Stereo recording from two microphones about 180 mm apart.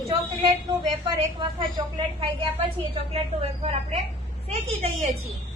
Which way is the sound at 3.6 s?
35° right (ahead or behind).